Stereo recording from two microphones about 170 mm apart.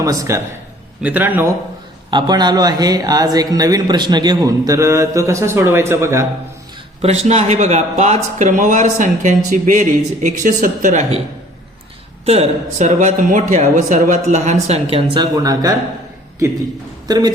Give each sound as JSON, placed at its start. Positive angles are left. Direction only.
{"t": 0.0, "sound": "a man's voice", "side_deg": -20}
{"t": 2.0, "sound": "speech", "side_deg": -25}
{"t": 7.0, "sound": "speech", "side_deg": -40}
{"t": 12.2, "sound": "speech", "side_deg": -40}
{"t": 17.1, "sound": "speech", "side_deg": -25}